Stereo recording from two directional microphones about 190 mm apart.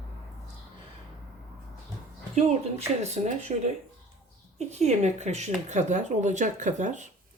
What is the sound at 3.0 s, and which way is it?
Speech, 35° right (ahead or behind).